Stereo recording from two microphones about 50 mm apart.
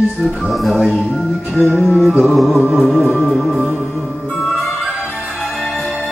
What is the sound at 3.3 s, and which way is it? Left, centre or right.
Speech, centre.